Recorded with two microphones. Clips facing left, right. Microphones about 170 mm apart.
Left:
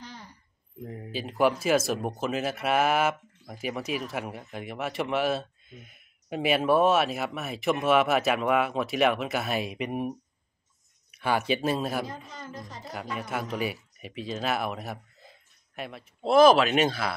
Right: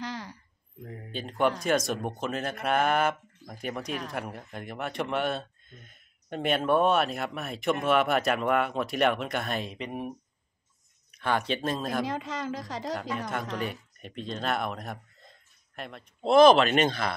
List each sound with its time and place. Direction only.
0.0 s a sound: 90° right
1.1 s speech: 5° left (ahead or behind)
12.1 s a woman's voice: 90° right
13.3 s speech: 5° left (ahead or behind)